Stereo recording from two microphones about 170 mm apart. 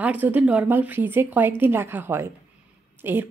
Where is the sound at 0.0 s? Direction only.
10° right (ahead or behind).